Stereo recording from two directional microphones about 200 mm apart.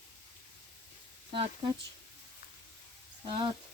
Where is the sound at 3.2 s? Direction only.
25° right (ahead or behind).